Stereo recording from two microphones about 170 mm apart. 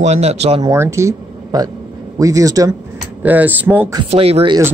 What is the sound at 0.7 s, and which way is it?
Speech, 15° right (ahead or behind).